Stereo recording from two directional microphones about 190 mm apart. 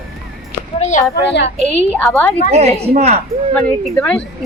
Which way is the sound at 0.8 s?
40° left (ahead or behind).